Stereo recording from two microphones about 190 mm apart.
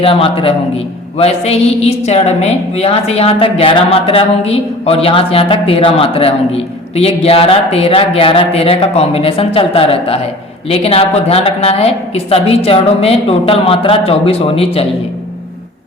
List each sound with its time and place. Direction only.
0.0 s a man's voice: 30° left (ahead or behind)